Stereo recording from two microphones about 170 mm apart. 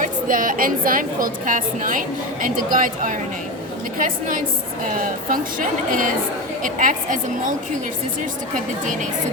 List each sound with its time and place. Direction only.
0.0 s a woman's voice: 55° right (ahead or behind)
8.8 s a woman's voice: 50° right (ahead or behind)